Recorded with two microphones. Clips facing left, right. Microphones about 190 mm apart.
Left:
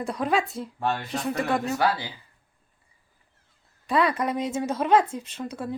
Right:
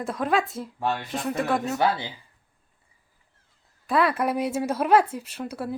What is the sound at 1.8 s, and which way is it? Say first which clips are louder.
Speech: right 1 dB; 20° right (ahead or behind).